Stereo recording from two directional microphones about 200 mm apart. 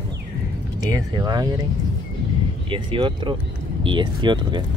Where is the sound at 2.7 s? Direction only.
25° right (ahead or behind).